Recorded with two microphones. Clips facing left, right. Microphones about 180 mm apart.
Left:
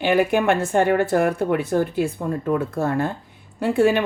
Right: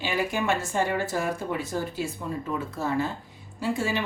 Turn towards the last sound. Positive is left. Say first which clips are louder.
# left 9 dB
turn(degrees=60)  # may be behind; listen again after turning